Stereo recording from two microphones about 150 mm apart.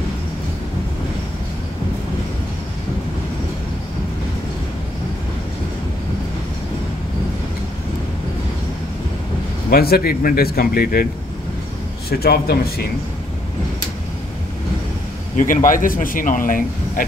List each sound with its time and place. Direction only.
9.7 s speech: 90° left
12.1 s a man's voice: 90° left
15.3 s speech: 60° left (ahead or behind)